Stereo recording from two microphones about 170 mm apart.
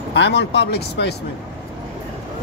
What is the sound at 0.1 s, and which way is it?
Speech, 90° left.